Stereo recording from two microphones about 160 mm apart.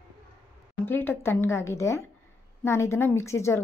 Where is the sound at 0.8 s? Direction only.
15° left (ahead or behind).